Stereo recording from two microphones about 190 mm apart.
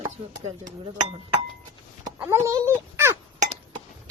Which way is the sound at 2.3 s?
15° right (ahead or behind).